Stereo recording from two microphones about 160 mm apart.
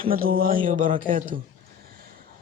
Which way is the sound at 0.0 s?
65° right (ahead or behind).